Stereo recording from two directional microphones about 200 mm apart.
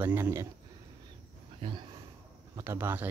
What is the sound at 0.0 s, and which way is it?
Speech, 10° right (ahead or behind).